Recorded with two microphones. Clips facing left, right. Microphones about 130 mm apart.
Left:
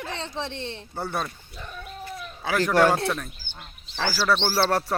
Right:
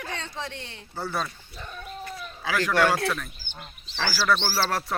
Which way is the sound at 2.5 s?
35° left (ahead or behind).